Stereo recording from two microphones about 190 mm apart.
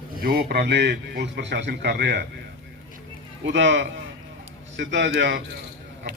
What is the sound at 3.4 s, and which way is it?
A man's voice, 70° right (ahead or behind).